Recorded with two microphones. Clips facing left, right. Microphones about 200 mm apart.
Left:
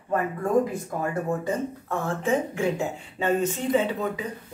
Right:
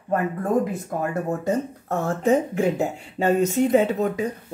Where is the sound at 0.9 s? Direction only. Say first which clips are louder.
Right 2 dB; 50° right (ahead or behind).